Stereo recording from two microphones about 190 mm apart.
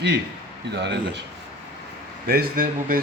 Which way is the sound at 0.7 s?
65° right (ahead or behind).